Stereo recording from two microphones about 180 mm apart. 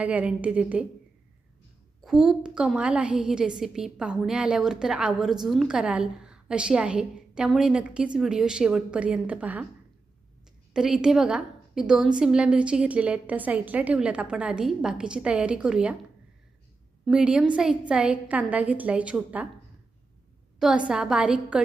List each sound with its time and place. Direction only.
0.0 s a woman's voice: 10° right (ahead or behind)
2.0 s a woman's voice: centre (ahead or behind)
10.8 s a woman's voice: 5° right (ahead or behind)
17.1 s a woman's voice: 5° right (ahead or behind)
20.6 s a woman's voice: 5° right (ahead or behind)